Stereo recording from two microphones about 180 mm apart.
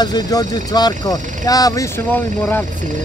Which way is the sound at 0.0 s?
20° left (ahead or behind).